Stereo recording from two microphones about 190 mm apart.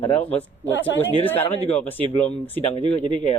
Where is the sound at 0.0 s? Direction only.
30° left (ahead or behind).